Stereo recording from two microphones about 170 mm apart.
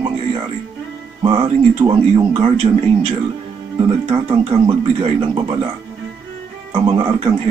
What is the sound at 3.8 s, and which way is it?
Speech, 30° right (ahead or behind).